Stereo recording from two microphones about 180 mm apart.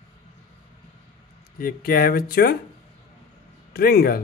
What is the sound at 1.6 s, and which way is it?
Speech, 55° left (ahead or behind).